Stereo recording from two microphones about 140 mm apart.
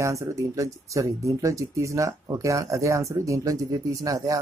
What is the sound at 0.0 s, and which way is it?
Speech, 20° right (ahead or behind).